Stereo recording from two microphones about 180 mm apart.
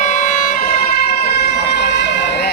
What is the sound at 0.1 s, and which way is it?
Emergency vehicle, 40° left (ahead or behind).